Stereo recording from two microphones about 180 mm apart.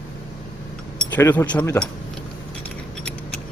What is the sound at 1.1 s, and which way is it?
Speech, 10° left (ahead or behind).